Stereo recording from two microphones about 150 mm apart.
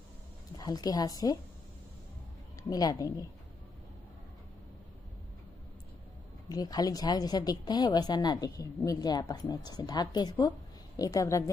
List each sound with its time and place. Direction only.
0.6 s a woman's voice: 25° left (ahead or behind)
2.7 s a woman's voice: 25° left (ahead or behind)
6.5 s a woman's voice: 25° left (ahead or behind)